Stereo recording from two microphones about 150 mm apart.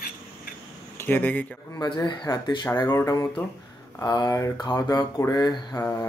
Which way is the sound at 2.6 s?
15° left (ahead or behind).